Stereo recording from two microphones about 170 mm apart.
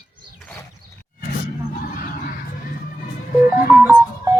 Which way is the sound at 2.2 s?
55° left (ahead or behind).